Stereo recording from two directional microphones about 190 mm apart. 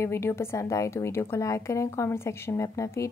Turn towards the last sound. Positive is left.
turn(degrees=15)  # may be behind; listen again after turning